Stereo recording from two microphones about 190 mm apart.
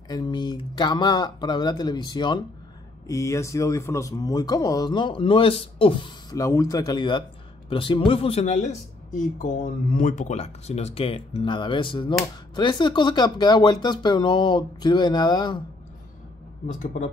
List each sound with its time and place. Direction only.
0.1 s speech: 20° left (ahead or behind)
16.6 s speech: 40° left (ahead or behind)